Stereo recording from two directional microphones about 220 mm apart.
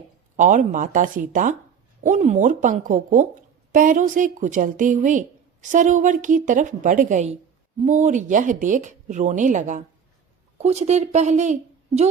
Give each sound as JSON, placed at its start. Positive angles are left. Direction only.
{"t": 0.3, "sound": "speech", "side_deg": -35}